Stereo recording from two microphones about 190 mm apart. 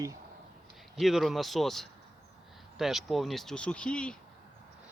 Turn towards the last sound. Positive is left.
turn(degrees=5)  # may be behind; listen again after turning